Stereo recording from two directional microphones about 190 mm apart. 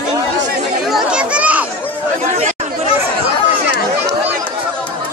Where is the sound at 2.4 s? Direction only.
40° right (ahead or behind).